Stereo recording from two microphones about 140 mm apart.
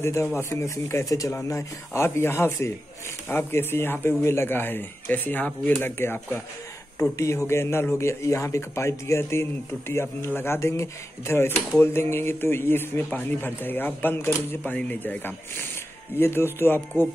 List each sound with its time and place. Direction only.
0.0 s speech: 20° left (ahead or behind)